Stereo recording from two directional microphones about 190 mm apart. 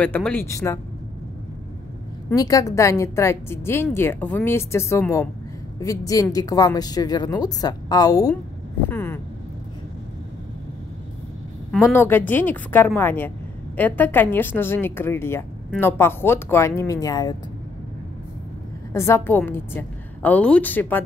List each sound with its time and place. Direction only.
0.0 s a woman's voice: 10° left (ahead or behind)
2.2 s a woman's voice: 20° left (ahead or behind)
11.8 s a woman's voice: 15° left (ahead or behind)
18.9 s a woman's voice: 15° left (ahead or behind)